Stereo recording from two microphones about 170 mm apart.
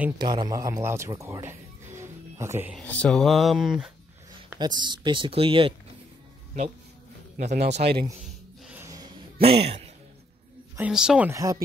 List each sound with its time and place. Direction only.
0.2 s a man's voice: 25° right (ahead or behind)
2.7 s speech: 10° left (ahead or behind)
4.6 s speech: 25° right (ahead or behind)
7.3 s speech: 45° right (ahead or behind)
8.2 s a sound: 5° right (ahead or behind)
8.8 s a sound: 20° right (ahead or behind)
9.4 s speech: 35° right (ahead or behind)
10.8 s speech: 5° right (ahead or behind)
11.2 s speech: 20° right (ahead or behind)